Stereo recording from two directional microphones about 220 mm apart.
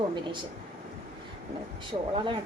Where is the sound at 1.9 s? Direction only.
25° right (ahead or behind).